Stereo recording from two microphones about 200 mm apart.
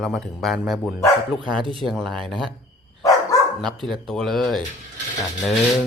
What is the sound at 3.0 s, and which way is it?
Dog, 15° left (ahead or behind).